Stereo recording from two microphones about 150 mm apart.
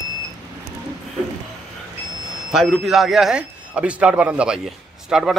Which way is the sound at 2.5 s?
Centre (ahead or behind).